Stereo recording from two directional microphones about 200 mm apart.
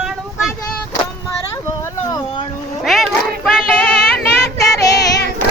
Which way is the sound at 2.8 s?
Centre (ahead or behind).